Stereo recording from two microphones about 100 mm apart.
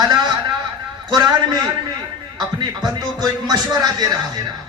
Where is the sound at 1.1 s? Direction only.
40° right (ahead or behind).